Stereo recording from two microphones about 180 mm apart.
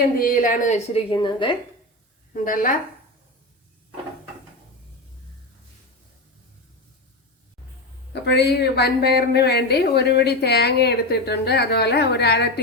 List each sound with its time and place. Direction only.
0.2 s speech: 50° left (ahead or behind)
1.1 s a woman's voice: 25° left (ahead or behind)
2.3 s speech: 50° left (ahead or behind)
8.1 s a woman's voice: 70° left (ahead or behind)